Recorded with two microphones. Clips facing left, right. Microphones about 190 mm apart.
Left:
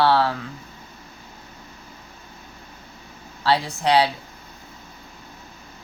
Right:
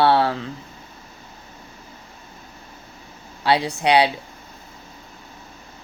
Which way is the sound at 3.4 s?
20° right (ahead or behind).